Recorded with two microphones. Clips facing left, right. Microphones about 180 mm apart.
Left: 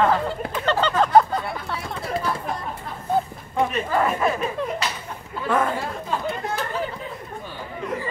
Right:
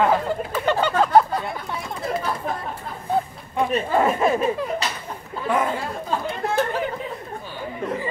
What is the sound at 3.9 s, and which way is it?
Speech, 25° right (ahead or behind).